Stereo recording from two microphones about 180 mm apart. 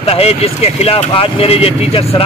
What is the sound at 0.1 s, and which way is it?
Speech, 35° left (ahead or behind).